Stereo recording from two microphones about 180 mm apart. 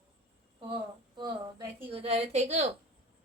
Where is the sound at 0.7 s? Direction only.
25° right (ahead or behind).